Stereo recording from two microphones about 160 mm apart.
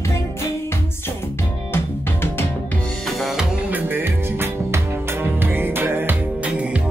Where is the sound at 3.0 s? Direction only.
Centre (ahead or behind).